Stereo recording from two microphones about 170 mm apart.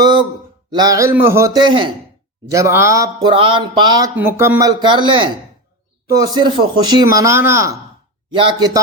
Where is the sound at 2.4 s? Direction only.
20° right (ahead or behind).